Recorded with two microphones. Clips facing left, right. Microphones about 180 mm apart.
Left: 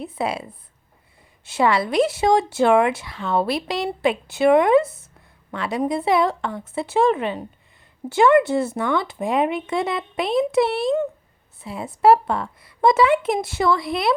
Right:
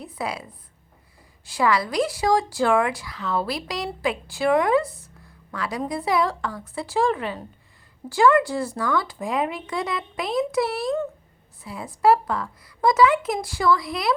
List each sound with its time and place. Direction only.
0.0 s a woman's voice: 25° left (ahead or behind)
1.5 s a woman's voice: 25° left (ahead or behind)